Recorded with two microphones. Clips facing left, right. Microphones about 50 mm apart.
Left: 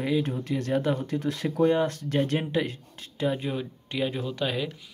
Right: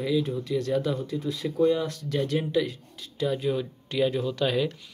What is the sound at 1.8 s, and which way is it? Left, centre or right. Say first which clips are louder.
Speech: left 3 dB; left.